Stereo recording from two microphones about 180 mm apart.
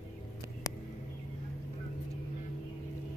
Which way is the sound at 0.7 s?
20° left (ahead or behind).